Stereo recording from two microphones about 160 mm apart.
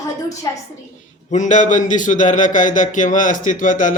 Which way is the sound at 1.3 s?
50° left (ahead or behind).